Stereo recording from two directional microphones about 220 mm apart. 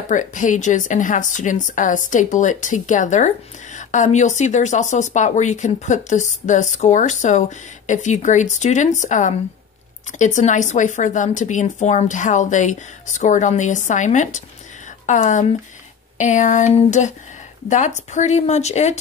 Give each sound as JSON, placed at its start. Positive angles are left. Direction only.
{"t": 0.1, "sound": "speech", "side_deg": 35}